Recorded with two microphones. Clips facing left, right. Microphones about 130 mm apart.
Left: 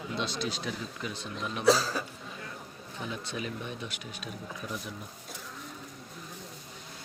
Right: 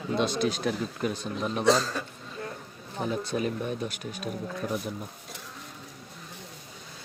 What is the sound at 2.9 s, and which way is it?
Speech, 40° right (ahead or behind).